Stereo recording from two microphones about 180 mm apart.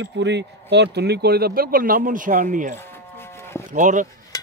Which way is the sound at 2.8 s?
15° left (ahead or behind).